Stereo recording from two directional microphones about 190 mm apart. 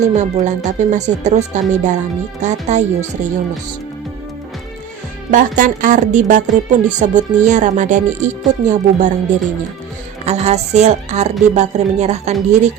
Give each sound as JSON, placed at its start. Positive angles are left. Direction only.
{"t": 0.0, "sound": "speech", "side_deg": -40}
{"t": 5.3, "sound": "speech", "side_deg": -45}
{"t": 10.2, "sound": "speech", "side_deg": -35}